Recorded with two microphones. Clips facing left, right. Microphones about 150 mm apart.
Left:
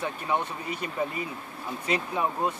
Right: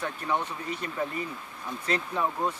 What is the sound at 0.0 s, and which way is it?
Speech, 10° left (ahead or behind).